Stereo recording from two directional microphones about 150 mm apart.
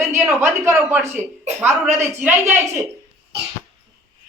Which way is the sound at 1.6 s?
15° right (ahead or behind).